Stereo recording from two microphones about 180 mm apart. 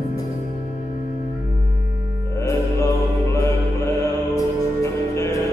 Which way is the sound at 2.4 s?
15° left (ahead or behind).